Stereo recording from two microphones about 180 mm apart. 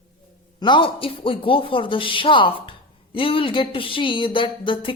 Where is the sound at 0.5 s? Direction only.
25° left (ahead or behind).